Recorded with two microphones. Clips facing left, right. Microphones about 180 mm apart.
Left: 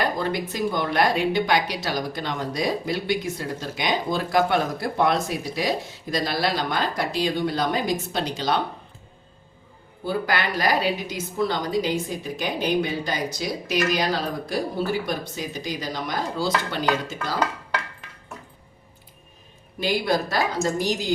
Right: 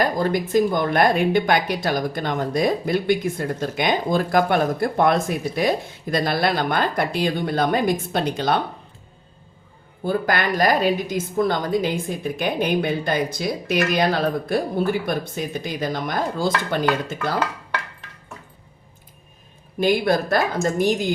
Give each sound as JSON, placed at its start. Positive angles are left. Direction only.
{"t": 0.0, "sound": "speech", "side_deg": -45}
{"t": 10.0, "sound": "speech", "side_deg": -50}
{"t": 19.8, "sound": "speech", "side_deg": -50}